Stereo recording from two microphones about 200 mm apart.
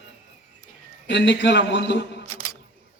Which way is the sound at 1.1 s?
60° left (ahead or behind).